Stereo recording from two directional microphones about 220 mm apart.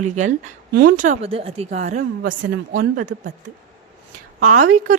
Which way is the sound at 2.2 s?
55° right (ahead or behind).